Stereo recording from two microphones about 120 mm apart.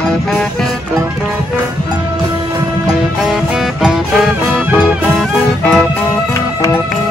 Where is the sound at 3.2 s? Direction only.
5° right (ahead or behind).